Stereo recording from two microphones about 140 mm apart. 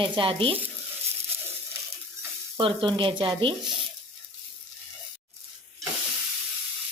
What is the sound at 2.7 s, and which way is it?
Speech, 35° right (ahead or behind).